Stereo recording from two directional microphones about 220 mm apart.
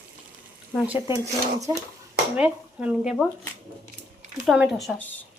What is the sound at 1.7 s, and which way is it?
Speech, 15° right (ahead or behind).